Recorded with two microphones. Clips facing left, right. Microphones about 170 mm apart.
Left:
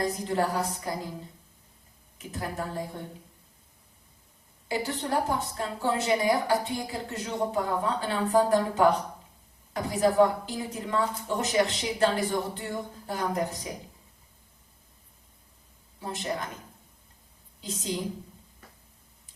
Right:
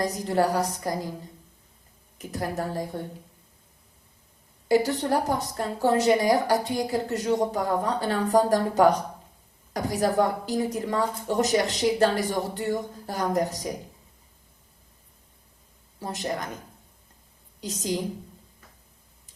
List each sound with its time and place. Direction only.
0.0 s a woman's voice: 40° right (ahead or behind)
2.1 s a woman's voice: 40° right (ahead or behind)
4.7 s a woman's voice: 40° right (ahead or behind)
16.0 s a woman's voice: 40° right (ahead or behind)
17.6 s a woman's voice: 40° right (ahead or behind)